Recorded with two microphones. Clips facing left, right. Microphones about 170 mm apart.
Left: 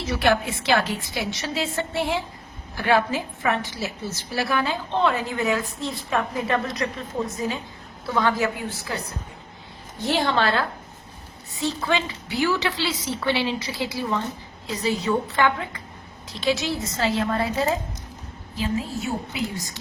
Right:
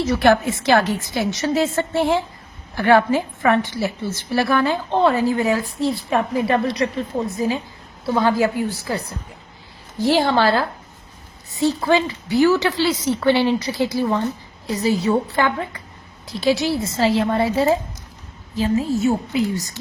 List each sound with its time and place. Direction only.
0.0 s a woman's voice: 45° right (ahead or behind)
5.0 s a woman's voice: 35° right (ahead or behind)
10.2 s a woman's voice: 35° right (ahead or behind)
14.8 s a woman's voice: 35° right (ahead or behind)
18.5 s a woman's voice: 40° right (ahead or behind)